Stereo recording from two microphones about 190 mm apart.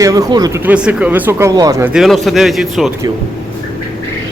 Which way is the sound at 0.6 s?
5° right (ahead or behind).